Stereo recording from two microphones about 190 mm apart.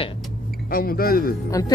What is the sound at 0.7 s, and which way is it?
Speech, 50° left (ahead or behind).